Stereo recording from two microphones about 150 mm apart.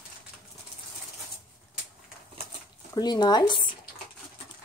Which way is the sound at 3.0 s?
25° left (ahead or behind).